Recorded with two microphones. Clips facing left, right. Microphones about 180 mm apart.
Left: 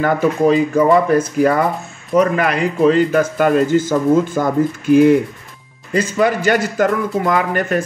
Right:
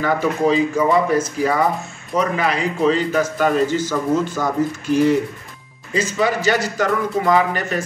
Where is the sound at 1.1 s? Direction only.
55° left (ahead or behind).